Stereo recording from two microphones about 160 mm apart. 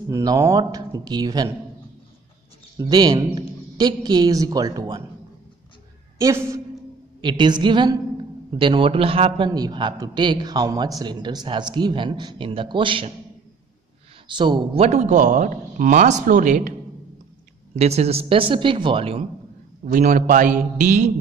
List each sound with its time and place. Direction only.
0.1 s a man's voice: 20° right (ahead or behind)
2.8 s a man's voice: 25° right (ahead or behind)
6.1 s a woman's voice: 20° right (ahead or behind)
14.2 s a man's voice: 30° right (ahead or behind); by 16.7 s 50° right (ahead or behind)
17.7 s speech: 40° right (ahead or behind)
19.9 s a man's voice: 55° right (ahead or behind)